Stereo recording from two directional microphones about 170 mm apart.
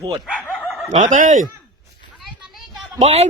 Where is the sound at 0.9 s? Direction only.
45° right (ahead or behind).